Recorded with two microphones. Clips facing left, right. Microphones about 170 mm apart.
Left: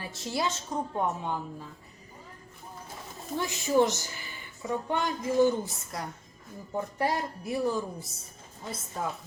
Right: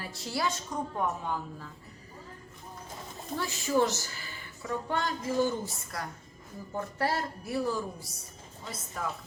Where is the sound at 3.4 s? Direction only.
20° left (ahead or behind).